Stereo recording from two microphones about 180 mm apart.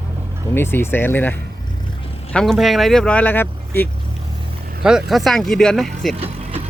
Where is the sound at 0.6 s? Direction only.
10° left (ahead or behind).